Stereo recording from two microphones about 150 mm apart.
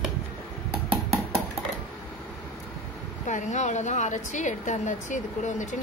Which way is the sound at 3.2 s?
55° left (ahead or behind).